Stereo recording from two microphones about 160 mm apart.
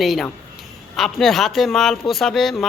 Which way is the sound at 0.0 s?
Centre (ahead or behind).